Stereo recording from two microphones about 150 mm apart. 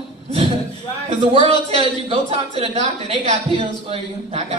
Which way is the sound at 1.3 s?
40° right (ahead or behind).